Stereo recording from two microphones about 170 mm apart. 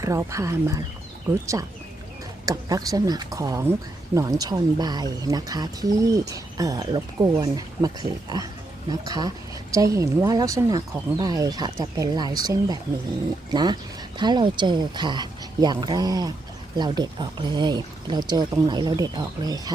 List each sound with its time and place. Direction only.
0.0 s speech: 20° right (ahead or behind)